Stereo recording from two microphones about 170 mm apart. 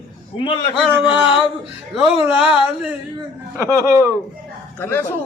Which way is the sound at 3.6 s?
15° right (ahead or behind).